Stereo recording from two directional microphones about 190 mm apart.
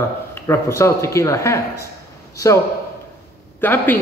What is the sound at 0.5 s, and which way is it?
Speech, 15° left (ahead or behind).